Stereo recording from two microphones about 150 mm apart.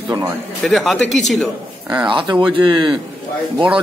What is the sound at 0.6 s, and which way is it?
Speech, centre (ahead or behind).